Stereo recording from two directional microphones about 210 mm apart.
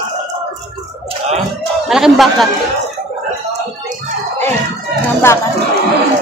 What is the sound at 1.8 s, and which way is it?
Speech, centre (ahead or behind).